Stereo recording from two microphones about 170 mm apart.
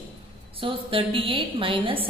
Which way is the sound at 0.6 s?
30° right (ahead or behind).